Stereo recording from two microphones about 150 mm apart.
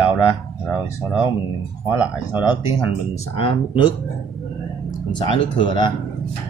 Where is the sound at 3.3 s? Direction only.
35° left (ahead or behind).